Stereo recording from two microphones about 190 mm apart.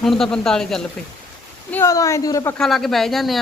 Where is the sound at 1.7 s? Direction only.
15° left (ahead or behind).